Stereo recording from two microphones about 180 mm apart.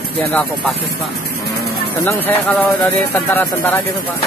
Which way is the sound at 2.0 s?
10° left (ahead or behind).